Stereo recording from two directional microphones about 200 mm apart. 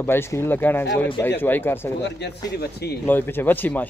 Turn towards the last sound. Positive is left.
turn(degrees=10)  # may be behind; listen again after turning